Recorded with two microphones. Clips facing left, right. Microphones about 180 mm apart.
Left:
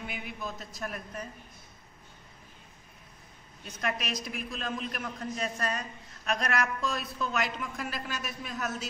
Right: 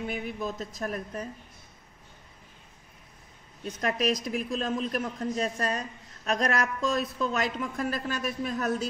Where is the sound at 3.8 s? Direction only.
35° right (ahead or behind).